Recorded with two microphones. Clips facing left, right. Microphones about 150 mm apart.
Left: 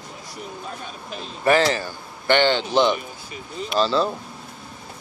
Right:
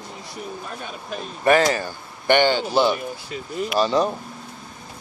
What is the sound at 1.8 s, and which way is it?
Speech, 15° right (ahead or behind).